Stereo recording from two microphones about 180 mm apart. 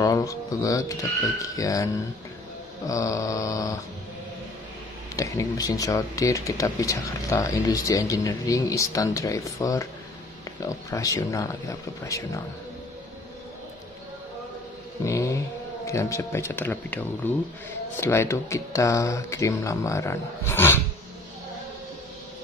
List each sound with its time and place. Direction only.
0.0 s speech: 20° left (ahead or behind)
1.4 s mantra: 20° left (ahead or behind)
2.9 s mantra: 20° left (ahead or behind)
5.1 s speech: 15° left (ahead or behind)
15.0 s speech: 15° left (ahead or behind)